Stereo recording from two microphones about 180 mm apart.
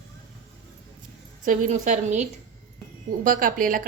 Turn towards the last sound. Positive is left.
turn(degrees=-50)  # may be behind; listen again after turning